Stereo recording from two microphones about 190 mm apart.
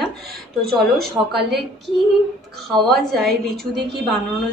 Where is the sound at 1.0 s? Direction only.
60° right (ahead or behind).